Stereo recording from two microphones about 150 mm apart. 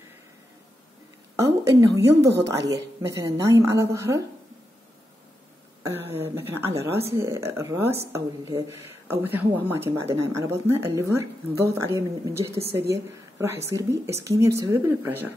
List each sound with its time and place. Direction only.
1.3 s a sound: 20° right (ahead or behind)
1.8 s a woman's voice: 20° right (ahead or behind)
5.9 s a woman's voice: 15° right (ahead or behind)